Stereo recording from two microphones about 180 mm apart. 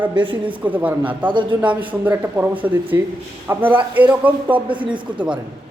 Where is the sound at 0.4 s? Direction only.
10° right (ahead or behind).